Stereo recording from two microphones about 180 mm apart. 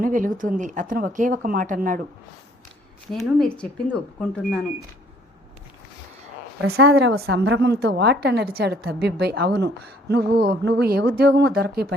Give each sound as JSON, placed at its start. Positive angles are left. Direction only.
{"t": 0.0, "sound": "speech", "side_deg": -50}
{"t": 3.3, "sound": "speech", "side_deg": 5}
{"t": 6.6, "sound": "a woman's voice", "side_deg": -65}